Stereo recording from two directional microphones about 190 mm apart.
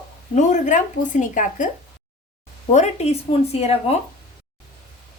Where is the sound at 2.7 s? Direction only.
35° left (ahead or behind).